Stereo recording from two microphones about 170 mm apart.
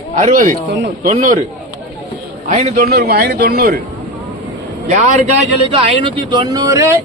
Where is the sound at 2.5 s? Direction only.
50° right (ahead or behind).